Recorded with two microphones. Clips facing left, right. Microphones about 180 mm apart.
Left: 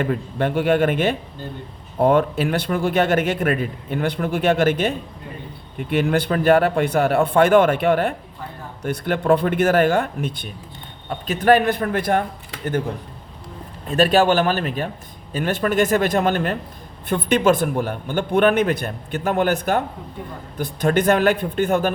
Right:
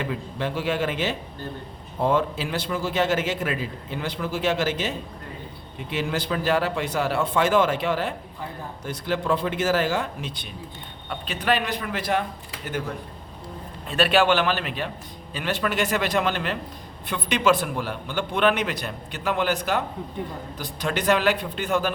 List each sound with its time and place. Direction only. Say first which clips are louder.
0.0 s a man's voice: left 6 dB; 55° left (ahead or behind)
13.9 s a man's voice: left 4 dB; 40° left (ahead or behind)